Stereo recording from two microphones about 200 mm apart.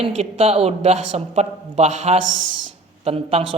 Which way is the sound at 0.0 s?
30° right (ahead or behind).